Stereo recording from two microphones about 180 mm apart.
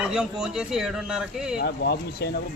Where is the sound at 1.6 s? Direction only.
65° left (ahead or behind).